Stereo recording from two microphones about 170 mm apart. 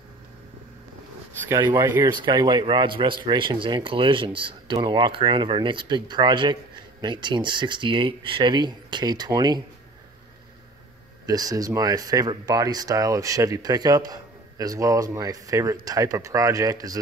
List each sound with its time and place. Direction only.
1.5 s speech: 20° right (ahead or behind)
11.2 s speech: 20° right (ahead or behind)